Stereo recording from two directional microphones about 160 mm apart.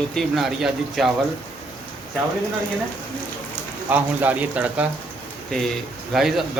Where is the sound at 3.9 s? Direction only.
10° right (ahead or behind).